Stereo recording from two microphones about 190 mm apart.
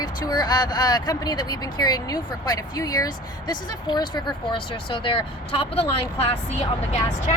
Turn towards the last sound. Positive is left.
turn(degrees=35)  # may be behind; listen again after turning